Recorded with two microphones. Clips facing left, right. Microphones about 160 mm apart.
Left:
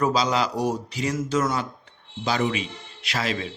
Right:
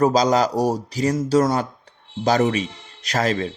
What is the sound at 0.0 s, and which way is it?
A man's voice, 40° right (ahead or behind).